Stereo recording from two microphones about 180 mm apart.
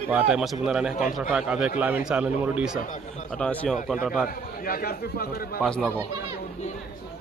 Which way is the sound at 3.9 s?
5° right (ahead or behind).